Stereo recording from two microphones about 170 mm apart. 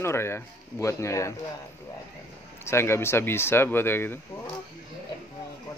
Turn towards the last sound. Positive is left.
turn(degrees=15)  # may be behind; listen again after turning